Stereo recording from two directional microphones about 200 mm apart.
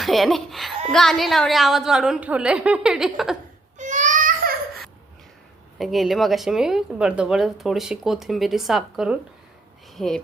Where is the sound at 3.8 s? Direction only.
40° right (ahead or behind).